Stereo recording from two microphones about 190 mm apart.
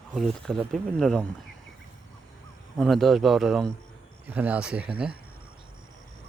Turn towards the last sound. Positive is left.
turn(degrees=-5)  # may be behind; listen again after turning